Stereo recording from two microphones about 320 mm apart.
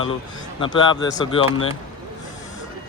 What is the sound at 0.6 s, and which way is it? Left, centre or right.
Speech, centre.